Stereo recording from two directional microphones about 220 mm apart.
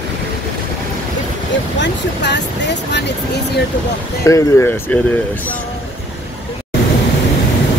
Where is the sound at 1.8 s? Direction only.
50° left (ahead or behind).